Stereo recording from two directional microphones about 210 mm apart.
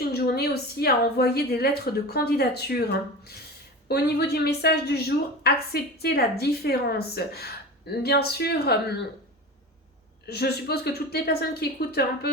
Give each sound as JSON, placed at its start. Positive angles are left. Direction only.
{"t": 0.0, "sound": "a woman's voice", "side_deg": 50}
{"t": 10.2, "sound": "a woman's voice", "side_deg": 50}